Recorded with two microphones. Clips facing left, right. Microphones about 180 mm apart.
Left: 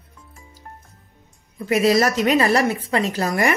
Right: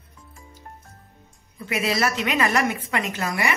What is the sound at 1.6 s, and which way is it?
Speech, 40° left (ahead or behind).